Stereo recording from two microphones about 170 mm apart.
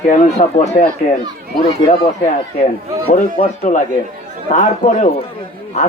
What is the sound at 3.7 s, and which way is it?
Speech, 45° left (ahead or behind).